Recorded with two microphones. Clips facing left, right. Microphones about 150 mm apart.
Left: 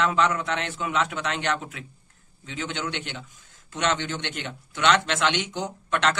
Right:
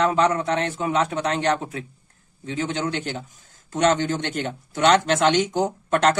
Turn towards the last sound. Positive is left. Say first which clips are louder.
# right 5 dB
turn(degrees=-45)  # may be behind; listen again after turning